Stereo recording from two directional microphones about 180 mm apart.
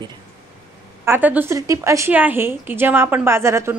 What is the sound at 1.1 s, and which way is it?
A woman's voice, 10° right (ahead or behind).